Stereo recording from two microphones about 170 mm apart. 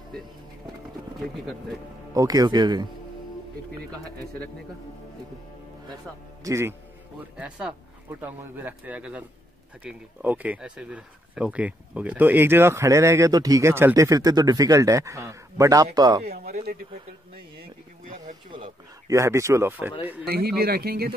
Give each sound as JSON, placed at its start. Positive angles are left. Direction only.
{"t": 2.1, "sound": "speech", "side_deg": -20}
{"t": 6.4, "sound": "speech", "side_deg": -15}
{"t": 16.3, "sound": "speech", "side_deg": -65}
{"t": 18.5, "sound": "speech", "side_deg": -30}
{"t": 19.1, "sound": "speech", "side_deg": -15}
{"t": 20.2, "sound": "speech", "side_deg": -65}